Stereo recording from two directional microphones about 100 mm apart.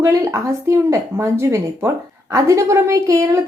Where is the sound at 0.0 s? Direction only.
30° right (ahead or behind).